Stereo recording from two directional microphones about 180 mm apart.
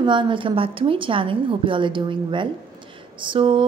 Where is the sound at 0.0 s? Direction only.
25° right (ahead or behind).